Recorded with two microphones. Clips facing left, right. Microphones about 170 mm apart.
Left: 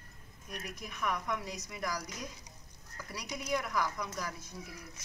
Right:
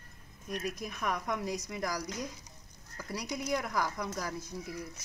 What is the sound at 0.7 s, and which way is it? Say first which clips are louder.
Speech: right 1 dB; 40° right (ahead or behind).